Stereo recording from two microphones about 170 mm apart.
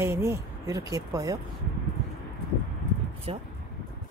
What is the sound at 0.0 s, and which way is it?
Speech, 15° right (ahead or behind).